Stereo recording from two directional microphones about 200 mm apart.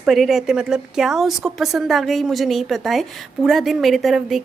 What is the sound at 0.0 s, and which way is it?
A woman's voice, centre (ahead or behind).